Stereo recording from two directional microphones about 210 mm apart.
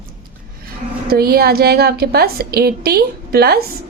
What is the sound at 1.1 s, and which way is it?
Speech, 45° right (ahead or behind).